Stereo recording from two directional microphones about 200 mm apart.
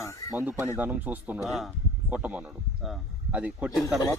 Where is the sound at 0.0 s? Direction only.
15° left (ahead or behind).